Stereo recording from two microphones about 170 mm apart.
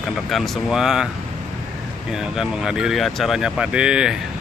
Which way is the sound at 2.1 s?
5° right (ahead or behind).